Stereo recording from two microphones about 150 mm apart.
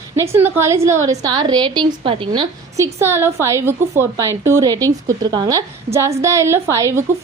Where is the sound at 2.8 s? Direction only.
15° right (ahead or behind).